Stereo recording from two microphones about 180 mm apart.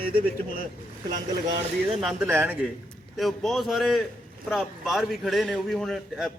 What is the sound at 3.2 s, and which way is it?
A man's voice, centre (ahead or behind).